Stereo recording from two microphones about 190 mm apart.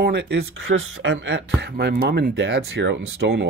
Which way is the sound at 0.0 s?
65° right (ahead or behind).